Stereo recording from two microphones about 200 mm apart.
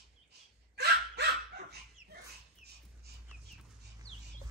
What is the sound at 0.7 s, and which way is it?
Dog, 55° right (ahead or behind).